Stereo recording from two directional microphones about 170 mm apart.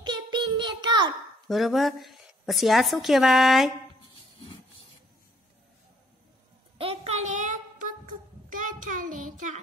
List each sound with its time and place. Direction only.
0.0 s child singing: 25° right (ahead or behind)
1.5 s a woman's voice: centre (ahead or behind)
6.8 s child singing: 35° right (ahead or behind)